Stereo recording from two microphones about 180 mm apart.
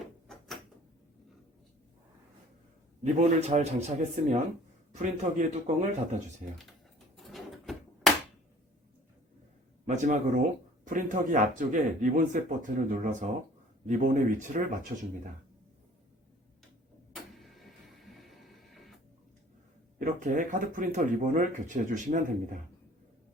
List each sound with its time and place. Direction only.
0.3 s door: centre (ahead or behind)
3.0 s a man's voice: 40° right (ahead or behind)
7.2 s a sound: centre (ahead or behind)
9.8 s speech: 45° right (ahead or behind)
14.9 s a man's voice: 35° right (ahead or behind)
17.2 s printer: centre (ahead or behind)
20.2 s speech: 45° right (ahead or behind)